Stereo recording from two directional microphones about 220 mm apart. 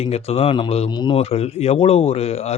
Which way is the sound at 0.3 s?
25° left (ahead or behind).